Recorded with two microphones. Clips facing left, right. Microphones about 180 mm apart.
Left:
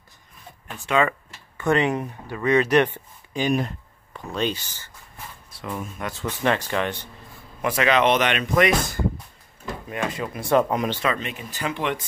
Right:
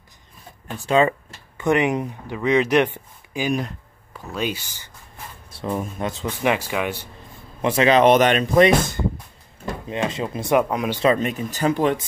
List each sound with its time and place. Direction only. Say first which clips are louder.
0.7 s speech: right 4 dB; 30° right (ahead or behind)
1.6 s speech: right 2 dB; 15° right (ahead or behind)
3.4 s speech: left 1 dB; centre (ahead or behind)
5.5 s a sound: right 6 dB; 30° right (ahead or behind)
6.0 s speech: right 1 dB; 15° right (ahead or behind)
7.6 s speech: right 5 dB; 30° right (ahead or behind)
10.6 s speech: even; centre (ahead or behind)
11.1 s speech: right 8 dB; 40° right (ahead or behind)